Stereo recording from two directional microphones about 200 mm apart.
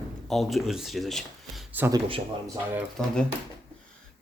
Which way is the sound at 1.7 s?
15° right (ahead or behind).